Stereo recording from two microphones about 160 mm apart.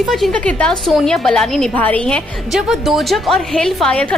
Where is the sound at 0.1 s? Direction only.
Centre (ahead or behind).